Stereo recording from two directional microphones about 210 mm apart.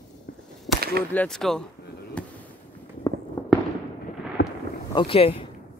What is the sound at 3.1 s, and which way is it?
Fireworks, 20° left (ahead or behind).